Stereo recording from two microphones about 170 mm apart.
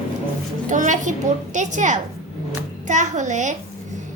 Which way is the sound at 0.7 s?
45° right (ahead or behind).